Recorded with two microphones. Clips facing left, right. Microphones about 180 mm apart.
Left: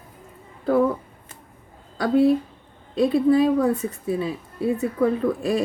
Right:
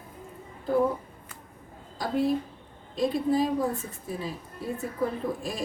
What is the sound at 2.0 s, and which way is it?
A woman's voice, 65° left (ahead or behind).